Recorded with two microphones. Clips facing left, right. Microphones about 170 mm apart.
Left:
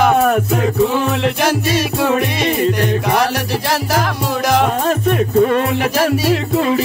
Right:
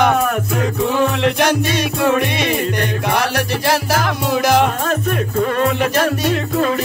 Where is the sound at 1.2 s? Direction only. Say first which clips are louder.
Right 1 dB; centre (ahead or behind).